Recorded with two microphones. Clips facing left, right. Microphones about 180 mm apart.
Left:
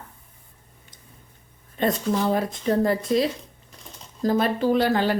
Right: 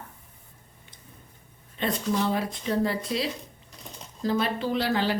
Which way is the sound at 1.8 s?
45° left (ahead or behind).